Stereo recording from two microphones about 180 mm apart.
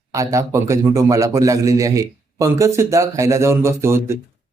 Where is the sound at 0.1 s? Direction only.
15° right (ahead or behind).